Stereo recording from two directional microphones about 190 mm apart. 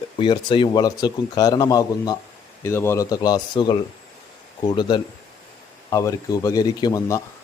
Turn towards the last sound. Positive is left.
turn(degrees=20)  # may be behind; listen again after turning